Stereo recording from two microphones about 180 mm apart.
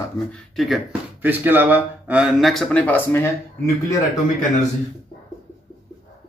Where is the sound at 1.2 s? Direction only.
10° right (ahead or behind); by 3.3 s 10° left (ahead or behind).